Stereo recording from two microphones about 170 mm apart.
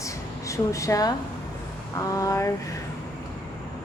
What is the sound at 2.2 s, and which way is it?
Speech, 20° left (ahead or behind).